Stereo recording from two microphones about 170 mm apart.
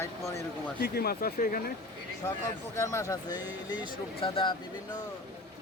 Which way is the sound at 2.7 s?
15° left (ahead or behind).